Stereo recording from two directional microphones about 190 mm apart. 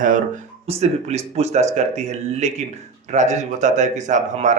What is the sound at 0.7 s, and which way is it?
Speech, 35° right (ahead or behind).